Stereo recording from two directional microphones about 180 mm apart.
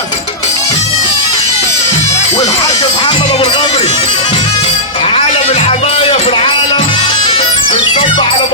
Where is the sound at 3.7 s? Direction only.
35° left (ahead or behind).